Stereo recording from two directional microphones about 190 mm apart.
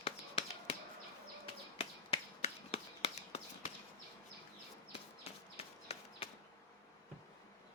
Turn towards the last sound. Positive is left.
turn(degrees=35)  # may be behind; listen again after turning